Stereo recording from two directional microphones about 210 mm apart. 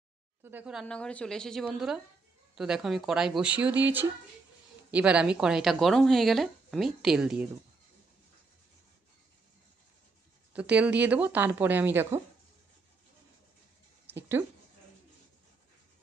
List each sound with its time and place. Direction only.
0.4 s speech: 10° right (ahead or behind)
4.9 s speech: 5° right (ahead or behind)
10.5 s speech: 5° right (ahead or behind)